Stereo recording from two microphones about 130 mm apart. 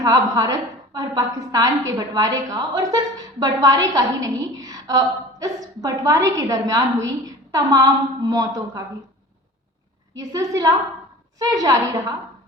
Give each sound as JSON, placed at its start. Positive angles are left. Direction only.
{"t": 0.0, "sound": "a woman's voice", "side_deg": -25}
{"t": 10.2, "sound": "a woman's voice", "side_deg": -25}